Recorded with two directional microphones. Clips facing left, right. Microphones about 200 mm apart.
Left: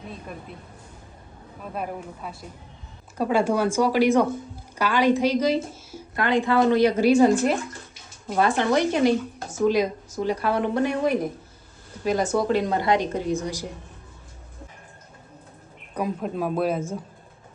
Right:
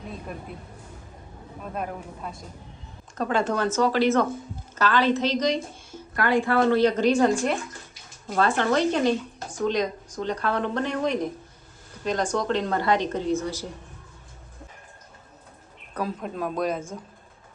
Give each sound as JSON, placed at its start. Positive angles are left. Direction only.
{"t": 1.7, "sound": "speech", "side_deg": 5}
{"t": 6.1, "sound": "speech", "side_deg": 20}
{"t": 8.4, "sound": "speech", "side_deg": 15}
{"t": 16.2, "sound": "speech", "side_deg": 5}